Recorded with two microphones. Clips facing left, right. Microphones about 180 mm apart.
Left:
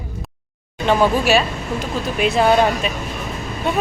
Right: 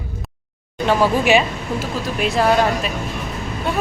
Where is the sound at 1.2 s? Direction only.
15° right (ahead or behind).